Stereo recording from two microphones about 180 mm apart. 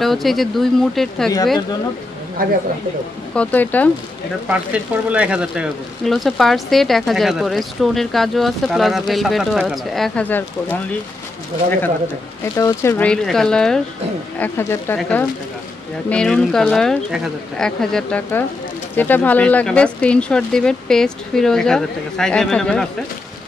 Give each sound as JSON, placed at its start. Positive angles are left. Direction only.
{"t": 0.0, "sound": "speech", "side_deg": 0}
{"t": 2.4, "sound": "speech", "side_deg": -50}
{"t": 3.3, "sound": "speech", "side_deg": 10}
{"t": 4.5, "sound": "speech", "side_deg": -5}
{"t": 12.5, "sound": "speech", "side_deg": 15}